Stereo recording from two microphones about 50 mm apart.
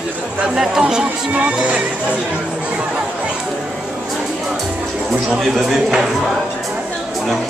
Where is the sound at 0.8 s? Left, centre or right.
Right.